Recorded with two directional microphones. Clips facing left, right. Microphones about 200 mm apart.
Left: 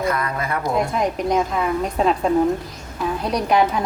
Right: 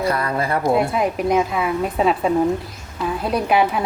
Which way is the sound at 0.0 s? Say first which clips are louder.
Right 2 dB; 35° right (ahead or behind).